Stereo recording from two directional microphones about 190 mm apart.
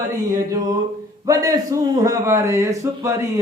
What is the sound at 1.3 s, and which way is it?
A man's voice, 20° right (ahead or behind).